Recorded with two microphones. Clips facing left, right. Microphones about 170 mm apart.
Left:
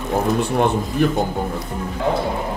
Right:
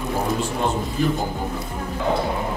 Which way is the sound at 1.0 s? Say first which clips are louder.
Left 3 dB; 65° left (ahead or behind).